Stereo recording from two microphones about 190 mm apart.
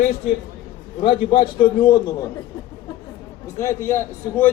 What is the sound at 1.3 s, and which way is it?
Speech, 25° left (ahead or behind).